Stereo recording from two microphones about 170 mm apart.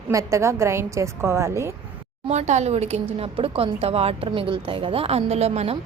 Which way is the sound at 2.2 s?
40° right (ahead or behind).